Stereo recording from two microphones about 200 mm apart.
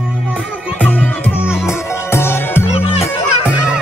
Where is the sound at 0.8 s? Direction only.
5° left (ahead or behind).